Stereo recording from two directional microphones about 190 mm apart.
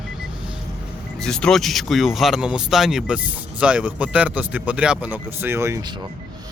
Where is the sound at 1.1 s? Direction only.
5° left (ahead or behind); by 5.9 s 15° right (ahead or behind).